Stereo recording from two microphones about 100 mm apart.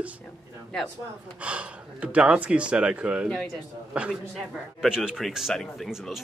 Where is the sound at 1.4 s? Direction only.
10° right (ahead or behind).